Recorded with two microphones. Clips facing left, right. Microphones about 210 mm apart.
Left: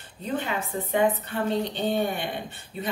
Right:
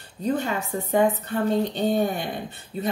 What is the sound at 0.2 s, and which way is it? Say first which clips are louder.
Speech: right 4 dB; 40° right (ahead or behind).